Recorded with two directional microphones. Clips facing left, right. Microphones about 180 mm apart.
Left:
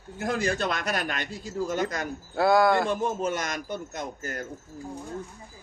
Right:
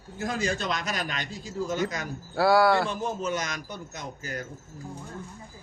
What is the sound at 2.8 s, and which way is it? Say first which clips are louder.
A man's voice: left 3 dB; 55° left (ahead or behind).